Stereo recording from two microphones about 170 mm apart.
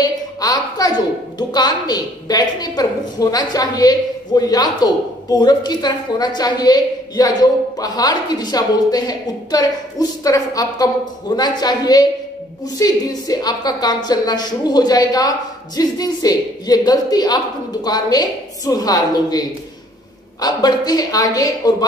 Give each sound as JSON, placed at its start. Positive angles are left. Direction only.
{"t": 0.4, "sound": "a woman's voice", "side_deg": 20}